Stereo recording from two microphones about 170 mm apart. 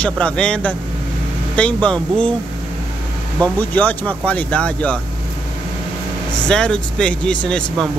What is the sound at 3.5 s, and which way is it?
Speech, 10° left (ahead or behind).